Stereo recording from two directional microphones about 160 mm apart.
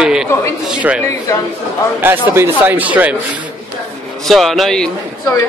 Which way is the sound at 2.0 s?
15° right (ahead or behind).